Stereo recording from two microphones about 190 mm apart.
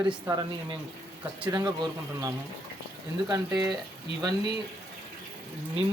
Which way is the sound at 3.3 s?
20° right (ahead or behind).